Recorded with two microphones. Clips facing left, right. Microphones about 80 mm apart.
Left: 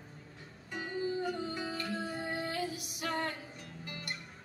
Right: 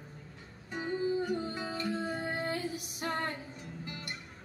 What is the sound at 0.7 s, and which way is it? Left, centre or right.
Music, right.